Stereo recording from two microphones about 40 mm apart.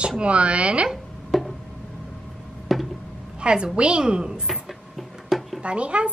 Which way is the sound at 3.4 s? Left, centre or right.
Right.